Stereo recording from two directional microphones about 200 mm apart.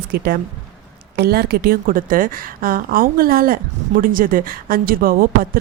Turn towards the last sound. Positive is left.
turn(degrees=-45)  # may be behind; listen again after turning